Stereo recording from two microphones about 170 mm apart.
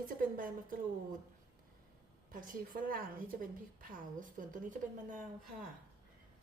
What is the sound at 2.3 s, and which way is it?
A woman's voice, 55° right (ahead or behind).